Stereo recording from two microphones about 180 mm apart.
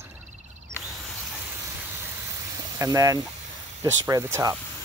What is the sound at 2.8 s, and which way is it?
Speech, 20° right (ahead or behind).